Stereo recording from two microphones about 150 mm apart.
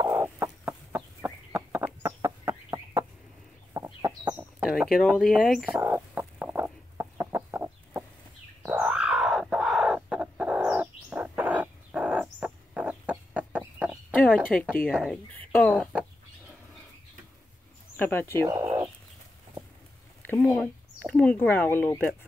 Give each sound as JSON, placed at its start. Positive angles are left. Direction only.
{"t": 0.1, "sound": "chicken", "side_deg": -15}
{"t": 4.6, "sound": "speech", "side_deg": 0}
{"t": 5.7, "sound": "chicken", "side_deg": -15}
{"t": 14.3, "sound": "speech", "side_deg": 5}
{"t": 15.5, "sound": "chicken", "side_deg": 5}
{"t": 17.9, "sound": "speech", "side_deg": 15}
{"t": 18.5, "sound": "chicken", "side_deg": -20}
{"t": 20.2, "sound": "a sound", "side_deg": 10}
{"t": 21.1, "sound": "speech", "side_deg": 10}